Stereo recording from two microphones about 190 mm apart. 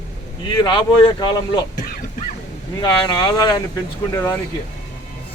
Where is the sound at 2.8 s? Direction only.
20° left (ahead or behind).